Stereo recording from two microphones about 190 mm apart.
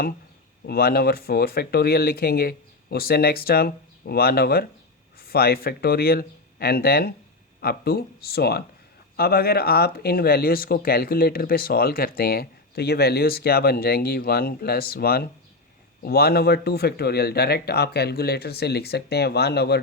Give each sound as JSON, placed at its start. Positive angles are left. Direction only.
{"t": 0.6, "sound": "speech", "side_deg": 55}